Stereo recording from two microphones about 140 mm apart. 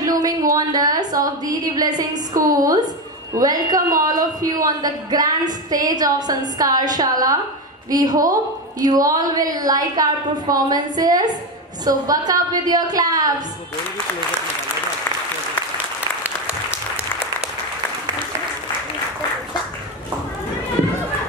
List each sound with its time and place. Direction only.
0.0 s a woman's voice: 25° right (ahead or behind)